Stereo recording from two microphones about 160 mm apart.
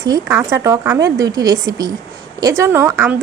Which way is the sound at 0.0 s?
20° right (ahead or behind).